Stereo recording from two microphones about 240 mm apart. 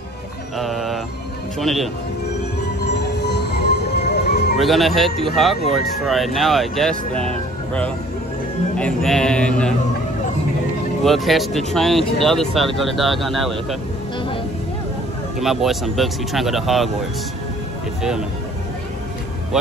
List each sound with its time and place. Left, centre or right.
0.6 s speech: centre
3.0 s music: left
4.6 s speech: centre
8.7 s speech: centre
11.1 s speech: centre
15.4 s speech: centre
19.5 s speech: centre